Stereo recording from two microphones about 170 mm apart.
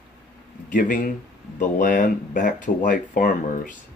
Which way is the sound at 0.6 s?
50° left (ahead or behind).